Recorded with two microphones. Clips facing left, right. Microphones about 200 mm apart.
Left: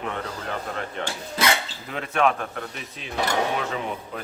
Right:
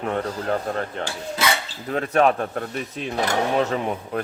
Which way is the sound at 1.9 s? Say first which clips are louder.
Right 4 dB; 40° right (ahead or behind).